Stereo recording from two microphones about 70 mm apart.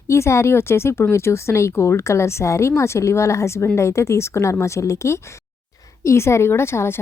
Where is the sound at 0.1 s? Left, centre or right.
Left.